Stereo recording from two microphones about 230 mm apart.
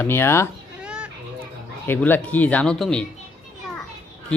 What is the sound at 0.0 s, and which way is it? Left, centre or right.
Speech, centre.